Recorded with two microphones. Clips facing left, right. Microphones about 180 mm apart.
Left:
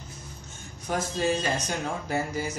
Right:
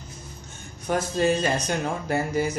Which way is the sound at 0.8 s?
60° right (ahead or behind).